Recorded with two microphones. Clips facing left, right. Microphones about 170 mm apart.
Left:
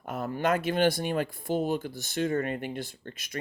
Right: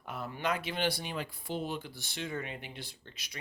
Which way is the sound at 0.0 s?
45° left (ahead or behind).